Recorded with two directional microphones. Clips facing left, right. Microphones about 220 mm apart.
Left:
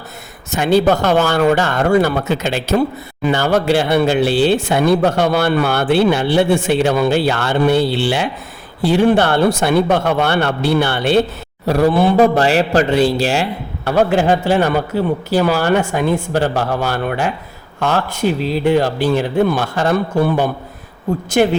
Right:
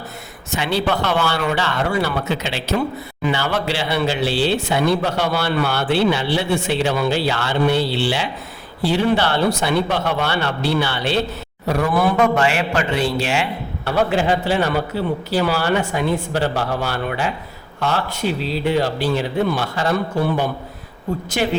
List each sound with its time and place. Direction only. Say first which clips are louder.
0.5 s a man's voice: left 7 dB; 45° left (ahead or behind)
11.6 s a man's voice: left 5 dB; 35° left (ahead or behind)